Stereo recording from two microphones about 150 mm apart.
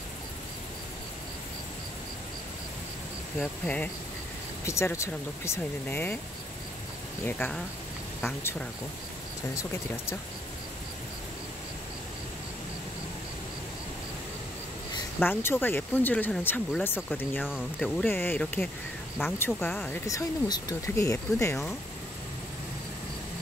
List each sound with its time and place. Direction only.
3.3 s speech: 10° left (ahead or behind)
7.2 s speech: 15° left (ahead or behind)
15.1 s speech: 15° left (ahead or behind)